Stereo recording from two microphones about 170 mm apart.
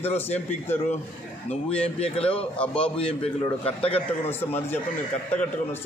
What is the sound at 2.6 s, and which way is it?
Speech, 5° left (ahead or behind).